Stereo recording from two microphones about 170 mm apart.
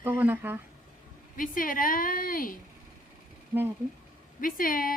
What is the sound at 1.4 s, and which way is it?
Speech, 55° left (ahead or behind).